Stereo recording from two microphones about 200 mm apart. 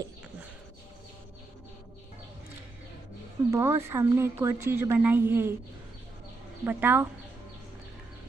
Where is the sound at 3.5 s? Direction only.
15° right (ahead or behind).